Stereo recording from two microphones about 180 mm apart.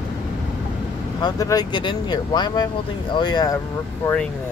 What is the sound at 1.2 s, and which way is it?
Speech, 20° left (ahead or behind).